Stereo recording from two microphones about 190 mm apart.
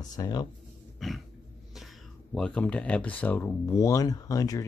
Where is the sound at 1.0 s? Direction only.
Centre (ahead or behind).